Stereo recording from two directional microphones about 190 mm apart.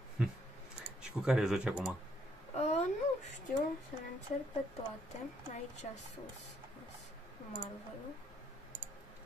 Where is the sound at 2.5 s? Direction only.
35° left (ahead or behind).